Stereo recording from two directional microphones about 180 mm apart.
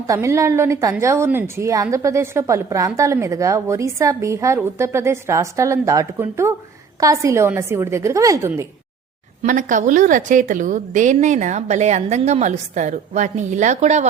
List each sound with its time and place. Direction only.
0.1 s a woman's voice: 15° right (ahead or behind)
9.4 s a woman's voice: 45° right (ahead or behind)